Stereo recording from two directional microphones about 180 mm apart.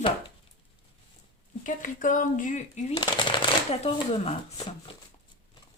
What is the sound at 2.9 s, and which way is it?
Speech, 25° left (ahead or behind).